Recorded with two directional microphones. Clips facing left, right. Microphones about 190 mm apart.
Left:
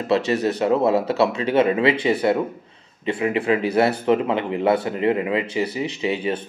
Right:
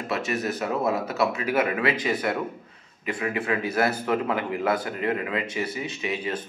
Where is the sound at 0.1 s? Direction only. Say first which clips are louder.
Left 8 dB; 30° left (ahead or behind).